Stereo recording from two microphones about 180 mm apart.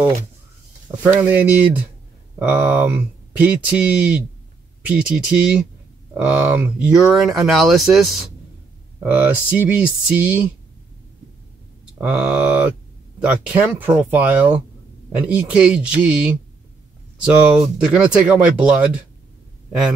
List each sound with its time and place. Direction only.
0.9 s speech: 25° right (ahead or behind)
2.3 s speech: 10° right (ahead or behind)
11.8 s speech: 5° right (ahead or behind)